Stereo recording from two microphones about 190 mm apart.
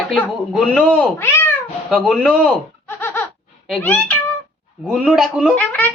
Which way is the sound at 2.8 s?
10° left (ahead or behind).